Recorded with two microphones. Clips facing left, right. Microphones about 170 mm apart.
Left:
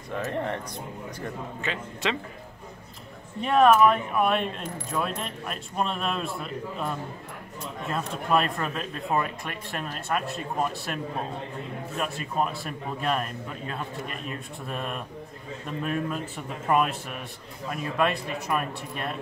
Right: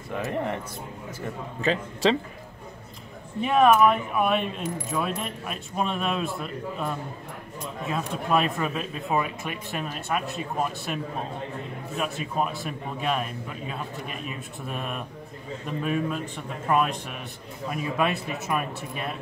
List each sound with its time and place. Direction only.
0.2 s speech: 10° right (ahead or behind)
1.6 s a man's voice: 35° right (ahead or behind)
3.3 s speech: 5° right (ahead or behind)